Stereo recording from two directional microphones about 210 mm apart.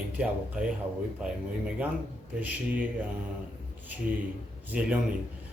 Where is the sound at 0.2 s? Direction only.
5° right (ahead or behind).